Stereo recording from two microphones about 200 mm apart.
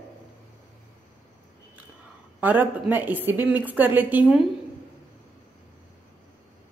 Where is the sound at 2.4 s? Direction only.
10° right (ahead or behind).